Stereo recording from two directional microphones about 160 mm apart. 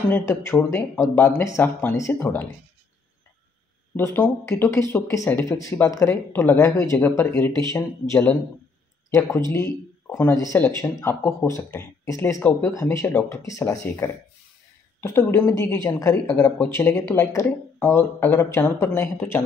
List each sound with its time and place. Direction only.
0.1 s speech: 15° left (ahead or behind)
3.9 s speech: 15° left (ahead or behind)
9.5 s speech: 15° left (ahead or behind)
16.3 s speech: 5° left (ahead or behind)